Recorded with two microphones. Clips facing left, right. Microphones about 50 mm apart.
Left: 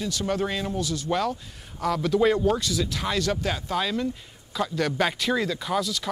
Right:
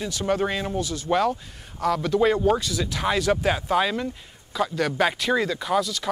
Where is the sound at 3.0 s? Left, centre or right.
Centre.